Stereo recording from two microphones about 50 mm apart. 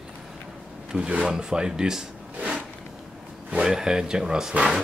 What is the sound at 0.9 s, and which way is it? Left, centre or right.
Speech, centre.